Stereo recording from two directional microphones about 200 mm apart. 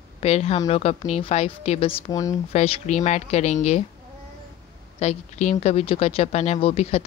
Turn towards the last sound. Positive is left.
turn(degrees=30)  # may be behind; listen again after turning